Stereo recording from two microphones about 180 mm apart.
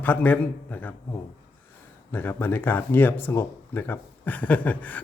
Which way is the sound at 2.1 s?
10° left (ahead or behind).